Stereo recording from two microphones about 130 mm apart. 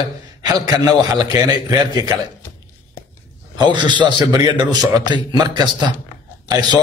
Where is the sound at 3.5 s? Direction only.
35° right (ahead or behind).